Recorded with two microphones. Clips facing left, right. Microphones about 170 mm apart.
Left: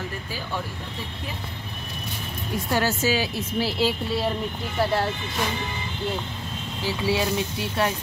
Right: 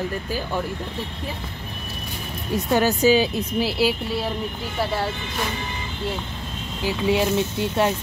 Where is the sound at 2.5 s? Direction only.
20° right (ahead or behind).